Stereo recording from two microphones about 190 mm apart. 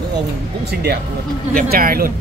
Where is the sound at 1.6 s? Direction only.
50° right (ahead or behind).